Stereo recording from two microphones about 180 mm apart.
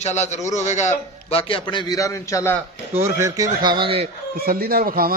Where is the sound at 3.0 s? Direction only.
15° right (ahead or behind).